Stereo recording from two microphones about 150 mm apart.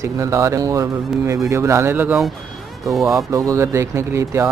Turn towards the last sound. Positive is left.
turn(degrees=-20)  # may be behind; listen again after turning